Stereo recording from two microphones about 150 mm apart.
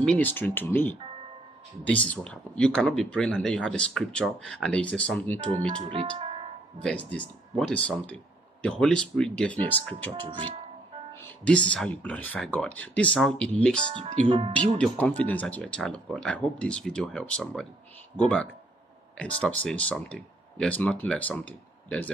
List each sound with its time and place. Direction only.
0.0 s speech: 10° left (ahead or behind)
6.8 s speech: 5° left (ahead or behind)
10.2 s speech: 30° right (ahead or behind)
11.1 s speech: 10° left (ahead or behind)
14.0 s speech: 50° right (ahead or behind)
14.8 s speech: 10° left (ahead or behind)